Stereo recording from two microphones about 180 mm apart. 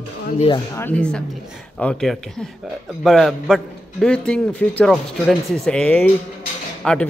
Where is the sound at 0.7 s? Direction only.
10° left (ahead or behind).